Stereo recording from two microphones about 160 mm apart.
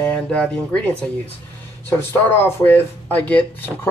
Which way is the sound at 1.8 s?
15° left (ahead or behind).